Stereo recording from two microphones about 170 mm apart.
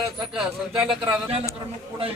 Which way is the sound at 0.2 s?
Centre (ahead or behind).